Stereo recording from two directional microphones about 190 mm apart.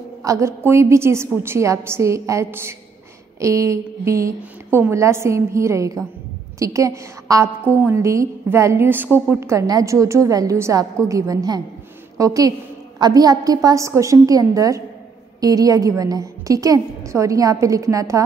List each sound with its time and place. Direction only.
0.2 s a woman's voice: 15° right (ahead or behind)